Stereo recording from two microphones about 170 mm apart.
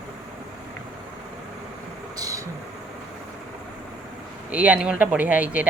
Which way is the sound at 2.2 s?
20° right (ahead or behind).